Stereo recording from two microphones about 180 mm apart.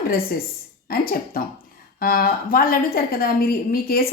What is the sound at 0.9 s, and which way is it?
A woman's voice, 55° left (ahead or behind).